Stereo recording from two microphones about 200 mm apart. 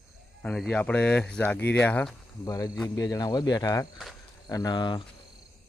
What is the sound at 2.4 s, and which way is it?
Speech, 20° left (ahead or behind).